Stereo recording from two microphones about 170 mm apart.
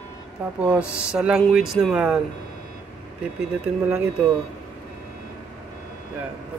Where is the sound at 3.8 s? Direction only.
5° right (ahead or behind).